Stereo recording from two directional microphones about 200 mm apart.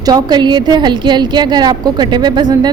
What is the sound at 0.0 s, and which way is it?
A woman's voice, 20° right (ahead or behind).